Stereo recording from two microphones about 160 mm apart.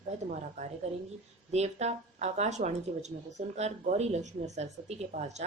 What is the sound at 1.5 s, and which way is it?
Speech, 45° right (ahead or behind).